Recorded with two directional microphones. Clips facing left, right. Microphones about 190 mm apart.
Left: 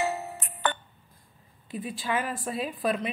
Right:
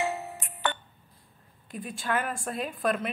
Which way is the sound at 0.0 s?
40° left (ahead or behind).